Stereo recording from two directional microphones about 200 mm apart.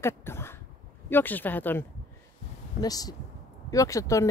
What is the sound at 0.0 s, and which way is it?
Throat clearing, 10° left (ahead or behind).